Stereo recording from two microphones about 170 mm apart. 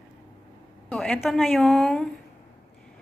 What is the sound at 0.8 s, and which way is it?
A woman's voice, 5° left (ahead or behind).